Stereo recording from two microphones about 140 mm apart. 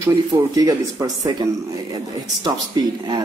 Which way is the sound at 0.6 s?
25° right (ahead or behind).